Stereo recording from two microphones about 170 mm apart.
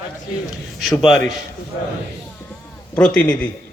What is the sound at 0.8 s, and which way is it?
Speech, centre (ahead or behind).